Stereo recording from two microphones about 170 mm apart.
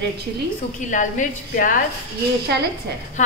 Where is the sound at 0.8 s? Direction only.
50° left (ahead or behind).